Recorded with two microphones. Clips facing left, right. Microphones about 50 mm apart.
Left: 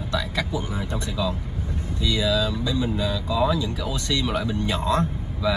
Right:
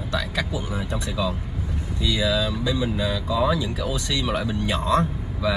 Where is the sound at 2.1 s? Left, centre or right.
Right.